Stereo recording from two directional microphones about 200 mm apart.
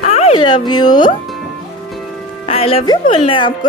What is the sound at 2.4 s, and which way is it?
Speech, 30° left (ahead or behind).